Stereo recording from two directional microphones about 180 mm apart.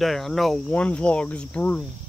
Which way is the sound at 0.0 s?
Centre (ahead or behind).